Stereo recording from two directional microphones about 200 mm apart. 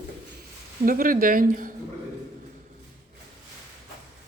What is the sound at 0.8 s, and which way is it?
Speech, 45° right (ahead or behind).